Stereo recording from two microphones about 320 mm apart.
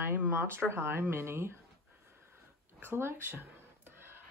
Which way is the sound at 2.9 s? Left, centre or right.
Centre.